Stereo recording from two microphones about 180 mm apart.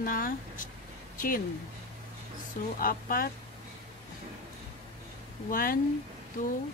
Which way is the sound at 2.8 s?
55° left (ahead or behind).